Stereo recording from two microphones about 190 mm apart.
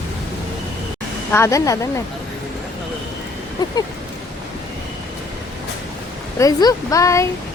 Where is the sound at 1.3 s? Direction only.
15° left (ahead or behind).